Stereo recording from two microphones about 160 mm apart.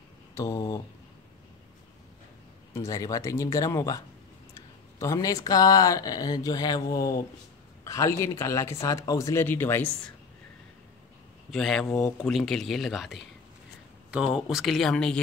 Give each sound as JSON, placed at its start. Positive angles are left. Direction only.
{"t": 0.3, "sound": "speech", "side_deg": 20}
{"t": 2.7, "sound": "speech", "side_deg": 20}
{"t": 11.5, "sound": "speech", "side_deg": 0}